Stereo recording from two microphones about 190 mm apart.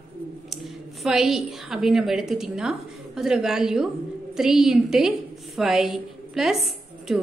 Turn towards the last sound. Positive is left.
turn(degrees=0)  # may be behind; listen again after turning